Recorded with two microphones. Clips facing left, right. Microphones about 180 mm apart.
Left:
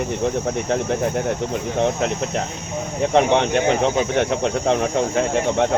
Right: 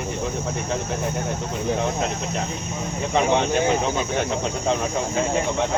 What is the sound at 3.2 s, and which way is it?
Speech, 70° left (ahead or behind).